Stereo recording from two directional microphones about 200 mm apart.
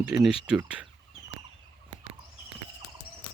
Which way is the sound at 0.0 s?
Centre (ahead or behind).